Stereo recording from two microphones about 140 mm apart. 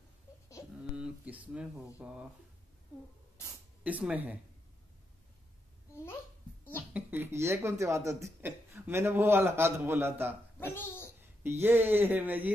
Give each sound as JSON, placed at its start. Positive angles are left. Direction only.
{"t": 0.9, "sound": "a sound", "side_deg": -10}
{"t": 2.0, "sound": "speech", "side_deg": -10}
{"t": 3.8, "sound": "speech", "side_deg": -10}
{"t": 6.9, "sound": "speech", "side_deg": -10}
{"t": 10.6, "sound": "a child's voice", "side_deg": 15}
{"t": 11.4, "sound": "speech", "side_deg": -15}